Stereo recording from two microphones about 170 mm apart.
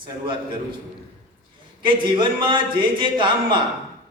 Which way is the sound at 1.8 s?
30° right (ahead or behind).